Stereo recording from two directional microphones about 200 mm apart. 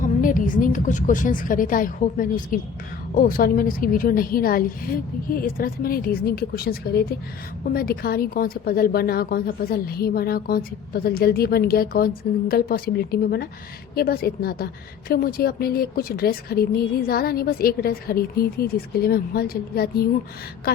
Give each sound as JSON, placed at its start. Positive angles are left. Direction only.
{"t": 0.0, "sound": "a woman's voice", "side_deg": 40}